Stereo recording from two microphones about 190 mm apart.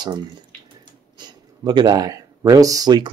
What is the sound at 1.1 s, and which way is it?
Speech, 20° right (ahead or behind).